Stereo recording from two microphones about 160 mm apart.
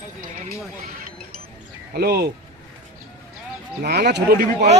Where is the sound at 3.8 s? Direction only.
85° right.